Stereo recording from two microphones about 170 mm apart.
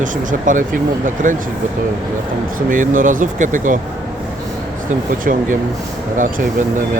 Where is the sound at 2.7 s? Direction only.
50° right (ahead or behind).